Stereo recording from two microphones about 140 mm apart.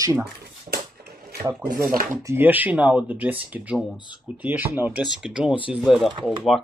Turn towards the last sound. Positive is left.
turn(degrees=0)  # may be behind; listen again after turning